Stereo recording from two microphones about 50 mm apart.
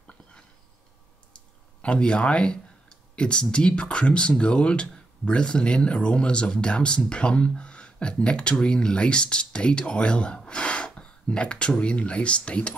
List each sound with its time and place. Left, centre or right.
1.8 s speech: centre